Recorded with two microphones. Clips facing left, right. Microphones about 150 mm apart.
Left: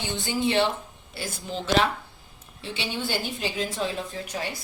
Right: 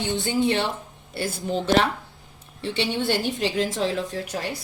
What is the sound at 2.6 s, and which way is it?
A woman's voice, 65° right (ahead or behind).